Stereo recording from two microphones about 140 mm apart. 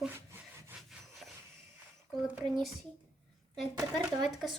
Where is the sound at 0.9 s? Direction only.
Centre (ahead or behind).